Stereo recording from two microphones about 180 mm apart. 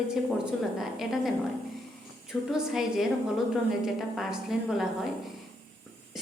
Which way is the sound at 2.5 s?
Centre (ahead or behind).